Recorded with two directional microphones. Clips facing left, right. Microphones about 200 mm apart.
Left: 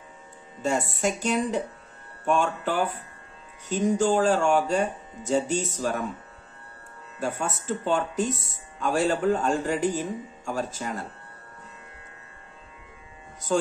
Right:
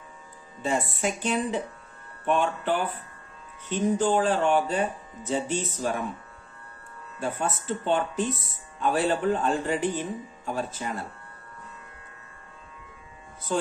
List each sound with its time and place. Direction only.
1.0 s speech: 40° left (ahead or behind)
7.2 s speech: 40° left (ahead or behind)
8.3 s speech: 25° left (ahead or behind)
8.8 s speech: 45° left (ahead or behind)